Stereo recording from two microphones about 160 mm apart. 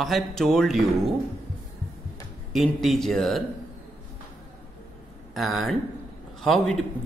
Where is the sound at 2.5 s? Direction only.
Centre (ahead or behind).